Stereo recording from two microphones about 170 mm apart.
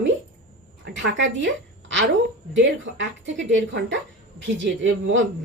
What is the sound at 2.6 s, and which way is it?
A woman's voice, 90° right.